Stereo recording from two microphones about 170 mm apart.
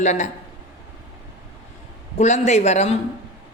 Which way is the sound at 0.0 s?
45° left (ahead or behind).